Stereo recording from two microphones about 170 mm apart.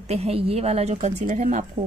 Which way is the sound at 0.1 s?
35° right (ahead or behind).